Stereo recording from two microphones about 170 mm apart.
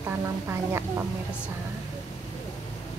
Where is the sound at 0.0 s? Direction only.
15° right (ahead or behind).